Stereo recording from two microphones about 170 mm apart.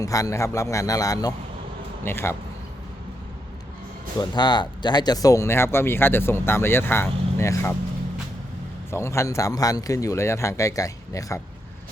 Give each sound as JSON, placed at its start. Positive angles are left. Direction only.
{"t": 0.0, "sound": "a man's voice", "side_deg": 20}
{"t": 4.2, "sound": "speech", "side_deg": 25}
{"t": 8.9, "sound": "a man's voice", "side_deg": 15}